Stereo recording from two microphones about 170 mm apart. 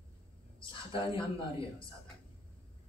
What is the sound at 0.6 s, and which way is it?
A man's voice, 30° left (ahead or behind).